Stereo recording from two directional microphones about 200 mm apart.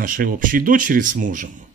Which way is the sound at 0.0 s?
45° right (ahead or behind).